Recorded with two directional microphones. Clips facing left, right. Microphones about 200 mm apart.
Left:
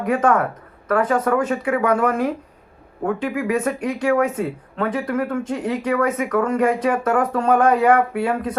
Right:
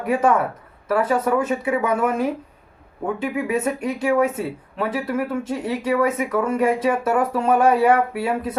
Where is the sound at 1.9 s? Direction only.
5° right (ahead or behind).